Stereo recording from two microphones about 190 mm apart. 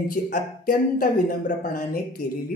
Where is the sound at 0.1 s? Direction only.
50° left (ahead or behind).